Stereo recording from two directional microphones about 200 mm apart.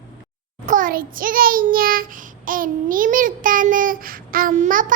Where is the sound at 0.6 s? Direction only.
40° right (ahead or behind).